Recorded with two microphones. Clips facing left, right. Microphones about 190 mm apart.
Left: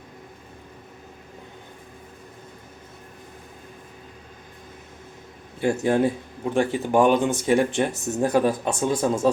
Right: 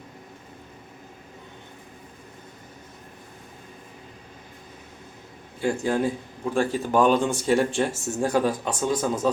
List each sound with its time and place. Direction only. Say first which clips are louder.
5.5 s speech: left 3 dB; 25° left (ahead or behind)